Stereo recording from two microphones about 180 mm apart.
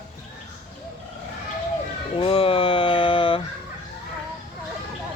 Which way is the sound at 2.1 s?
30° left (ahead or behind).